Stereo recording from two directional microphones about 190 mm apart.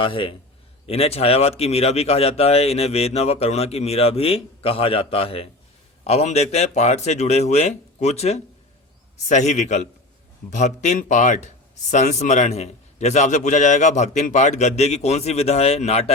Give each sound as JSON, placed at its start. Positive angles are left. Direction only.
{"t": 0.0, "sound": "a man's voice", "side_deg": 25}